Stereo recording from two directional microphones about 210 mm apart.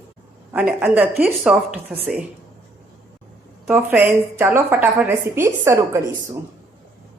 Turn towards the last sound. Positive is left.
turn(degrees=-15)  # may be behind; listen again after turning